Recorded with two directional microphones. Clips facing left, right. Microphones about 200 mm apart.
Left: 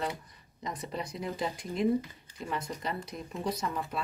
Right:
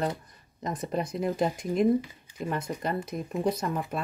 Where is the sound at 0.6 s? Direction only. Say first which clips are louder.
Right 6 dB; 50° right (ahead or behind).